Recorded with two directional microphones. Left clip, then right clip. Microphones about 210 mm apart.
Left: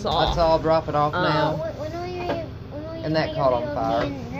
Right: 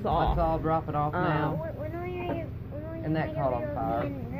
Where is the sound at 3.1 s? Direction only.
45° left (ahead or behind).